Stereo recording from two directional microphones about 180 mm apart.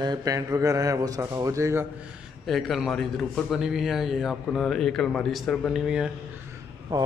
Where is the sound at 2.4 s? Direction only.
Centre (ahead or behind).